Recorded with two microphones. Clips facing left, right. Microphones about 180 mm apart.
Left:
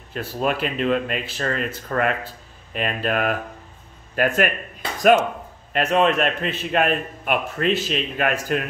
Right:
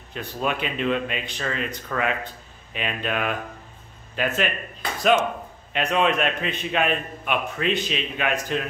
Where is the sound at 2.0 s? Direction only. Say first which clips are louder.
Left 3 dB; centre (ahead or behind).